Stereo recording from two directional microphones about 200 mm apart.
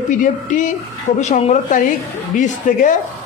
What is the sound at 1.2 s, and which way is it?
A man's voice, 35° left (ahead or behind).